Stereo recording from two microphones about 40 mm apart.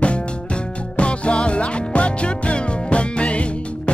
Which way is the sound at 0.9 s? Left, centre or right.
Left.